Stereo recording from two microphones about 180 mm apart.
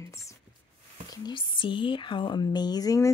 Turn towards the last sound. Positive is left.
turn(degrees=20)  # may be behind; listen again after turning